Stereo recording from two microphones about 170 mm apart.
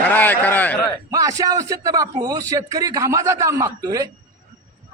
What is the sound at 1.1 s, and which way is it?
A man's voice, 20° right (ahead or behind).